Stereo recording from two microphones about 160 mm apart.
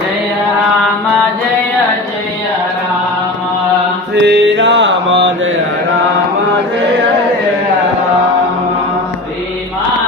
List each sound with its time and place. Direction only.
4.1 s mantra: 90° right